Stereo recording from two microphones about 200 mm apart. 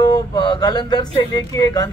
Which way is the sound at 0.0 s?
20° left (ahead or behind).